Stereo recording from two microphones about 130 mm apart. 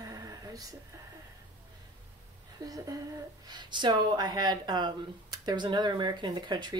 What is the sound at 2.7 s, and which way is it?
Speech, 25° right (ahead or behind).